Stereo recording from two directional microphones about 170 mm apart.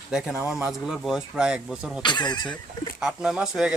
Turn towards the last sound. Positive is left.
turn(degrees=-5)  # may be behind; listen again after turning